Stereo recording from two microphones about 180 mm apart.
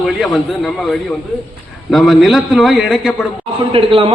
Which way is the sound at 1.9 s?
Centre (ahead or behind).